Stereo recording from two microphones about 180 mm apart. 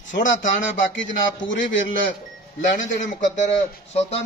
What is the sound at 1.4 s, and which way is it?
Speech, 90° left.